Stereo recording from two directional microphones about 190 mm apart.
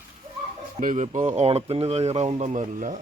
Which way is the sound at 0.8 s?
40° right (ahead or behind).